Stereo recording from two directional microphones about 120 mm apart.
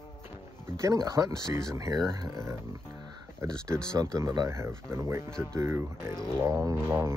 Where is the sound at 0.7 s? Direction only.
30° right (ahead or behind).